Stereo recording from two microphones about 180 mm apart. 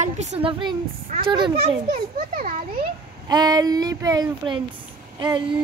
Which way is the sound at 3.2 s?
20° right (ahead or behind).